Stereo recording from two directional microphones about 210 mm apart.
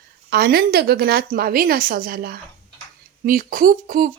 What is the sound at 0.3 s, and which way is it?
Speech, 45° right (ahead or behind).